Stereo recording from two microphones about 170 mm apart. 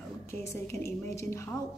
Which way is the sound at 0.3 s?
15° left (ahead or behind).